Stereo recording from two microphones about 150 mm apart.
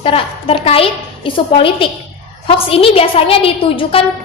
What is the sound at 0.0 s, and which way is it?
A woman's voice, 40° left (ahead or behind).